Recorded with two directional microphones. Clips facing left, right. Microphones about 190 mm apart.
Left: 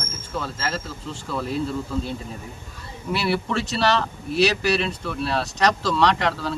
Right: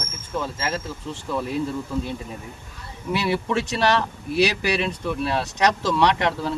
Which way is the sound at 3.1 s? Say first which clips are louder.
Right 1 dB; 15° right (ahead or behind).